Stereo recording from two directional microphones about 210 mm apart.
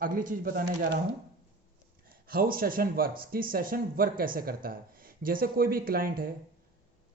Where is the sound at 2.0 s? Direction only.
45° right (ahead or behind).